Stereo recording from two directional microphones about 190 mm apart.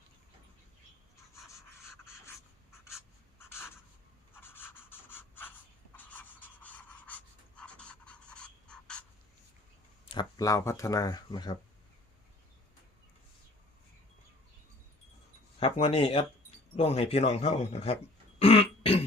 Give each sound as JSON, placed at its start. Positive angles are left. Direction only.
{"t": 1.4, "sound": "pant", "side_deg": 0}
{"t": 1.7, "sound": "pant", "side_deg": 15}
{"t": 3.3, "sound": "writing", "side_deg": 15}
{"t": 4.4, "sound": "a sound", "side_deg": 10}
{"t": 6.0, "sound": "pant", "side_deg": 10}
{"t": 10.2, "sound": "speech", "side_deg": 20}
{"t": 15.6, "sound": "speech", "side_deg": 30}
{"t": 18.3, "sound": "burping", "side_deg": 30}